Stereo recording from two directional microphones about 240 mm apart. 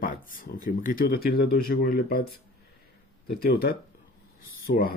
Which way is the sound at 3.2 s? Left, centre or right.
Left.